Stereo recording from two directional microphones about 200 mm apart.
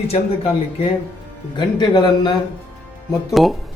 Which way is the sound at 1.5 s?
20° left (ahead or behind).